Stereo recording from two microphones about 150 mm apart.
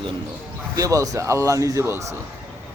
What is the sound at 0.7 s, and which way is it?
Speech, 20° right (ahead or behind).